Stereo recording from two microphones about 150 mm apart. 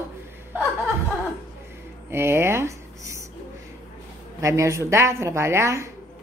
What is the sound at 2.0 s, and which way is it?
Speech, 15° right (ahead or behind).